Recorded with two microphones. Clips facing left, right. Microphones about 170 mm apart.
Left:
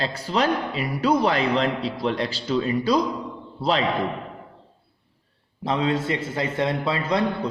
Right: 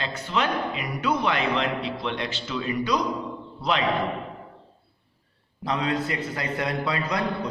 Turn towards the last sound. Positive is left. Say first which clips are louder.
# left 4 dB
turn(degrees=25)  # may be behind; listen again after turning